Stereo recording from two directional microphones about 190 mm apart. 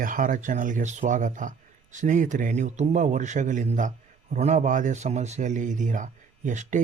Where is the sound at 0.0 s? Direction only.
45° right (ahead or behind).